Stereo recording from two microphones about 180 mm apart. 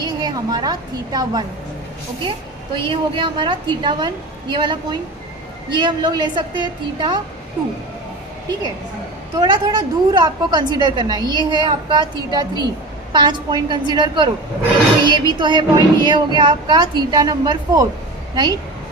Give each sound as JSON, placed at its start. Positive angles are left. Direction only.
{"t": 0.0, "sound": "a woman's voice", "side_deg": -25}
{"t": 9.3, "sound": "a woman's voice", "side_deg": -20}